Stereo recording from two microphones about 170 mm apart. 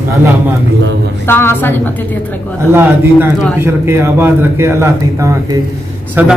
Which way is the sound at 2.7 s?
15° right (ahead or behind).